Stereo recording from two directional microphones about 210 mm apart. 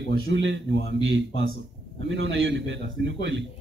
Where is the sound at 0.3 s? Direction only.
60° right (ahead or behind).